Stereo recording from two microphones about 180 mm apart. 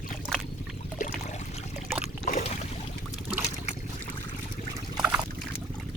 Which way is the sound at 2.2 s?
45° left (ahead or behind).